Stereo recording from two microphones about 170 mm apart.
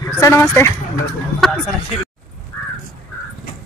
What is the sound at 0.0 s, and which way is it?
Speech, 15° left (ahead or behind).